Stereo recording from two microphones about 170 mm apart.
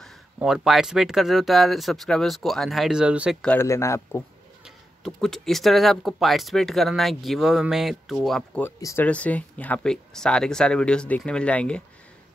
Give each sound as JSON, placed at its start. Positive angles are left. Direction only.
{"t": 0.0, "sound": "speech", "side_deg": -5}
{"t": 3.4, "sound": "a man's voice", "side_deg": 15}
{"t": 4.6, "sound": "speech", "side_deg": 0}
{"t": 8.7, "sound": "speech", "side_deg": 20}
{"t": 9.0, "sound": "speech", "side_deg": 10}